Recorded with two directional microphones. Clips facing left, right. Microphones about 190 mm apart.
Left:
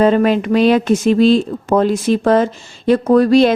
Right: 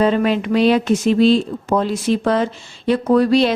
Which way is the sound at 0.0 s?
45° left (ahead or behind).